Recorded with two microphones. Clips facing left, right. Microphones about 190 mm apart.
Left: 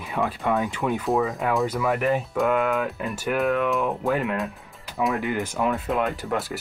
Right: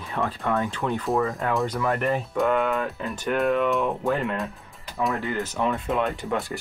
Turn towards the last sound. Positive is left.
turn(degrees=0)  # may be behind; listen again after turning